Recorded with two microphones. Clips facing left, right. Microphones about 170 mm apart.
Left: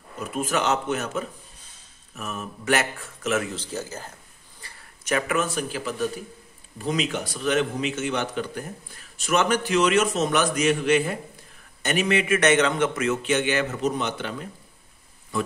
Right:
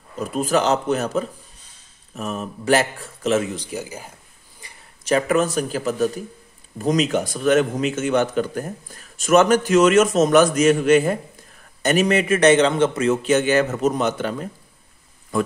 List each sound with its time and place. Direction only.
0.2 s a man's voice: 35° right (ahead or behind)
3.5 s speech: 15° right (ahead or behind)
4.6 s a sound: 15° right (ahead or behind)
5.0 s a man's voice: 35° right (ahead or behind)